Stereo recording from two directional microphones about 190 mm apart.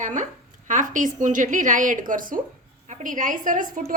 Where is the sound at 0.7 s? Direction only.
40° right (ahead or behind).